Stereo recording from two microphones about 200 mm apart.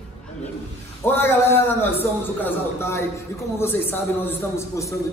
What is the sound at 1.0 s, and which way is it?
A man's voice, 10° left (ahead or behind).